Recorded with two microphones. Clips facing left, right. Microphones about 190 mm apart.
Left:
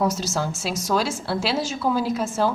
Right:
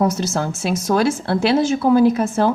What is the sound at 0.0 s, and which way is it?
A woman's voice, 55° right (ahead or behind).